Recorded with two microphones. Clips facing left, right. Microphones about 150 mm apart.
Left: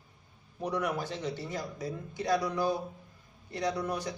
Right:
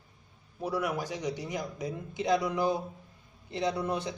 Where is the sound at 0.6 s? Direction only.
5° right (ahead or behind).